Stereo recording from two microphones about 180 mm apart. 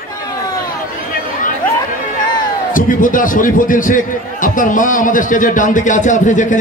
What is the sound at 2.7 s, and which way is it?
A man's voice, 50° left (ahead or behind).